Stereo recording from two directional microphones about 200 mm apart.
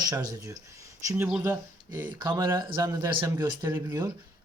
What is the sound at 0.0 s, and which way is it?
A man's voice, 20° right (ahead or behind).